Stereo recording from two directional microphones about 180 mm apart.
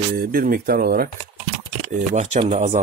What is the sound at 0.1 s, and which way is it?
Speech, 55° right (ahead or behind).